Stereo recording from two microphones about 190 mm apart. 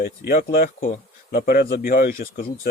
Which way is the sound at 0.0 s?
50° left (ahead or behind).